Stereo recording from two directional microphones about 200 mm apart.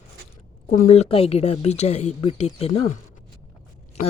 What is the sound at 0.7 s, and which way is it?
A woman's voice, 40° left (ahead or behind).